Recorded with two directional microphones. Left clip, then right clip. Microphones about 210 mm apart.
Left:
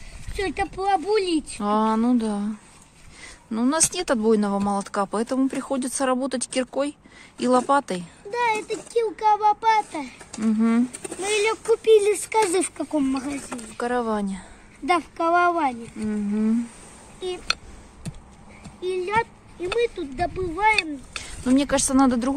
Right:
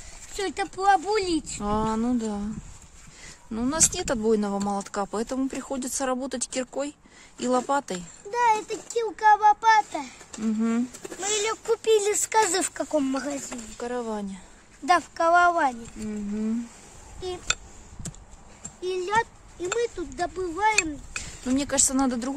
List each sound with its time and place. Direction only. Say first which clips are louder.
0.3 s speech: left 3 dB; 10° right (ahead or behind); by 13.3 s 30° right (ahead or behind)
13.7 s speech: left 7 dB; 10° left (ahead or behind)
14.9 s speech: right 1 dB; 20° right (ahead or behind)
16.1 s speech: left 6 dB; centre (ahead or behind)
18.8 s speech: left 1 dB; 10° right (ahead or behind)